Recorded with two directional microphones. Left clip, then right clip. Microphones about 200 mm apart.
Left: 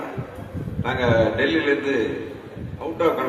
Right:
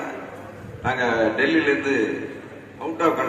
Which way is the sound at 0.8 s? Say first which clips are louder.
Left 1 dB; 55° right (ahead or behind).